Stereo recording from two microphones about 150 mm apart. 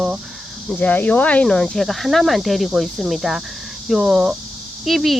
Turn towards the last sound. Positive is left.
turn(degrees=0)  # may be behind; listen again after turning